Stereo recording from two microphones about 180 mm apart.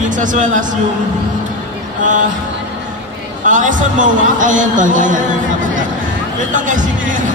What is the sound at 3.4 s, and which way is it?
A man's voice, 45° right (ahead or behind).